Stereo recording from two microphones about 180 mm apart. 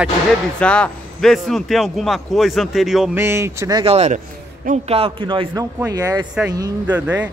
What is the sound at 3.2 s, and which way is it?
Speech, 15° right (ahead or behind).